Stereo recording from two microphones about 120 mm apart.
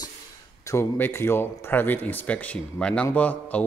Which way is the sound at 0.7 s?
20° left (ahead or behind).